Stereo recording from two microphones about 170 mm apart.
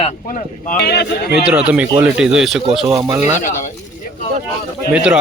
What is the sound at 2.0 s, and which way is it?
Speech, 5° right (ahead or behind).